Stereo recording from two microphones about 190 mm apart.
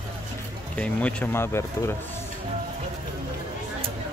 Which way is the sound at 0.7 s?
10° left (ahead or behind).